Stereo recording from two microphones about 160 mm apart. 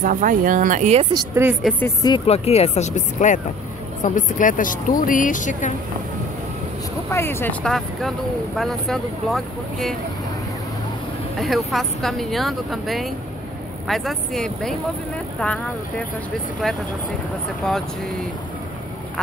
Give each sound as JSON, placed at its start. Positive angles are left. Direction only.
{"t": 0.0, "sound": "speech", "side_deg": -55}
{"t": 1.1, "sound": "speech", "side_deg": -15}
{"t": 1.6, "sound": "speech", "side_deg": 10}
{"t": 2.0, "sound": "speech", "side_deg": 35}
{"t": 7.1, "sound": "speech", "side_deg": 15}
{"t": 8.5, "sound": "speech", "side_deg": 0}
{"t": 11.3, "sound": "speech", "side_deg": 0}
{"t": 16.6, "sound": "speech", "side_deg": 5}